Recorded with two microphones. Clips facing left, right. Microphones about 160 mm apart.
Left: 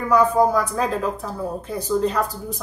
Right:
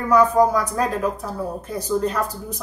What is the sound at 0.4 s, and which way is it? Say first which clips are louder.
Speech: right 1 dB; 10° left (ahead or behind).